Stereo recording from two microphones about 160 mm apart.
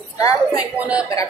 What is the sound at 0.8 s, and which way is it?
Speech, 5° right (ahead or behind).